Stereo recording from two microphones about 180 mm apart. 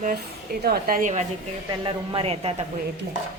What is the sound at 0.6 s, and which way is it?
Speech, 50° right (ahead or behind).